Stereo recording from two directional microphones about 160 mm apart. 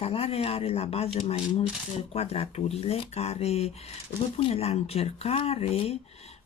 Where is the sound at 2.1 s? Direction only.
40° left (ahead or behind).